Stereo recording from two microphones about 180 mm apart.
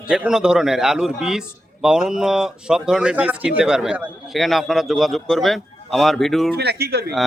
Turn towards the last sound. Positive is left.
turn(degrees=-65)  # may be behind; listen again after turning